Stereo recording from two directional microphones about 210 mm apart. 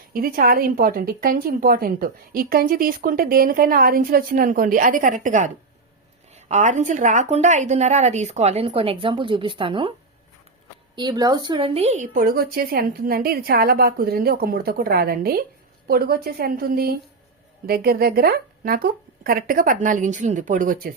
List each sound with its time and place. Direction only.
0.1 s a woman's voice: 45° right (ahead or behind); by 9.9 s 25° right (ahead or behind)
10.9 s a woman's voice: 20° right (ahead or behind); by 20.9 s 40° right (ahead or behind)